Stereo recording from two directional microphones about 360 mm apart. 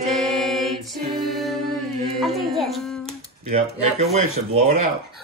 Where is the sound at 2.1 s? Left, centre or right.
Centre.